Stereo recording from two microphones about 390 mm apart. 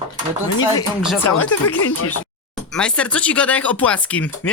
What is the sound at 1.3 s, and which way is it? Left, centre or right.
Speech, left.